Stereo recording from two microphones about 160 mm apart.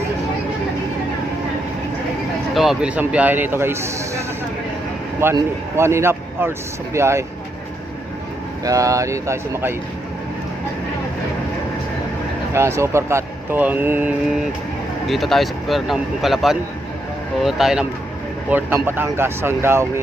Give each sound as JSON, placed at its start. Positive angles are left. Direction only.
{"t": 2.6, "sound": "speech", "side_deg": -5}
{"t": 5.2, "sound": "speech", "side_deg": -15}
{"t": 8.6, "sound": "speech", "side_deg": -20}
{"t": 12.5, "sound": "speech", "side_deg": -15}
{"t": 15.0, "sound": "speech", "side_deg": 0}